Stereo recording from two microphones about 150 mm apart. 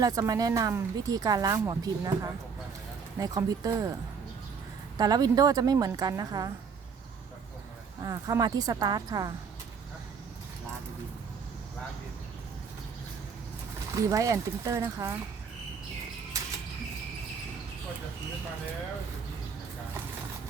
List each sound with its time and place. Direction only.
0.0 s speech: 25° right (ahead or behind)
4.9 s speech: 25° right (ahead or behind)
8.0 s speech: 25° right (ahead or behind)
13.9 s speech: 20° right (ahead or behind)